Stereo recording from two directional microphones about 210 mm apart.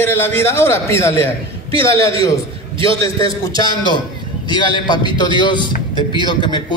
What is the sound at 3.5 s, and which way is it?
A man's voice, 20° left (ahead or behind).